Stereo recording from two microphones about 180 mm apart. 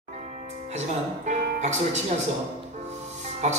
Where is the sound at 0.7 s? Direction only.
40° right (ahead or behind).